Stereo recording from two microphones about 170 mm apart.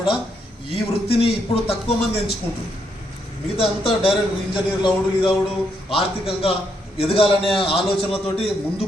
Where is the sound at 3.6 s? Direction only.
30° left (ahead or behind).